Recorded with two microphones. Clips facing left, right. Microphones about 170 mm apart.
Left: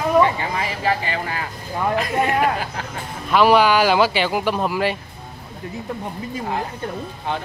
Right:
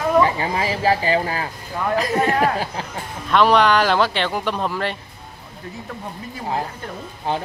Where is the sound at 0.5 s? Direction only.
35° right (ahead or behind).